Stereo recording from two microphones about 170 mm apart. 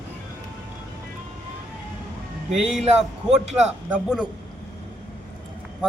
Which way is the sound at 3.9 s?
5° right (ahead or behind).